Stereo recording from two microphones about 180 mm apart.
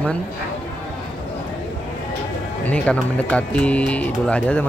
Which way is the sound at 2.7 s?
5° left (ahead or behind).